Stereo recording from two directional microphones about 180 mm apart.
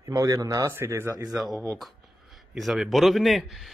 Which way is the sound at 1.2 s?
Centre (ahead or behind).